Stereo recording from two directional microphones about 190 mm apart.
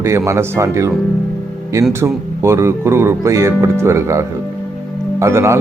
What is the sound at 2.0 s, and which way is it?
Speech, 15° right (ahead or behind).